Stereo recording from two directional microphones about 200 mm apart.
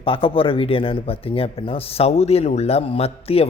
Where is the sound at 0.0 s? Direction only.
25° left (ahead or behind).